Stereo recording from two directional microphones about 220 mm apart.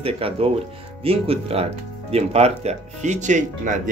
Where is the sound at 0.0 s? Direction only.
25° right (ahead or behind).